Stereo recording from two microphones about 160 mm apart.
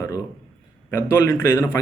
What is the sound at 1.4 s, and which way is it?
Speech, 20° left (ahead or behind).